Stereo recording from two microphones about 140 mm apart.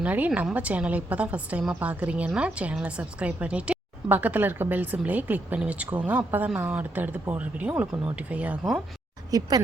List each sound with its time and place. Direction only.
0.0 s a woman's voice: 10° right (ahead or behind)
9.3 s speech: 25° right (ahead or behind)